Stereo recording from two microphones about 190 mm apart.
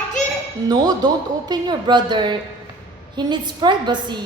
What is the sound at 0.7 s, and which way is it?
Speech, 20° right (ahead or behind).